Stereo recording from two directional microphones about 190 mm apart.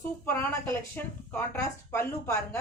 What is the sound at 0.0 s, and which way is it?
A woman's voice, 15° left (ahead or behind).